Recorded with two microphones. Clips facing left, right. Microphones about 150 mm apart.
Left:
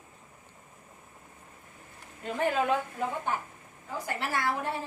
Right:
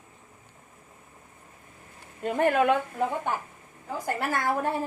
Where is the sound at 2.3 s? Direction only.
60° right (ahead or behind).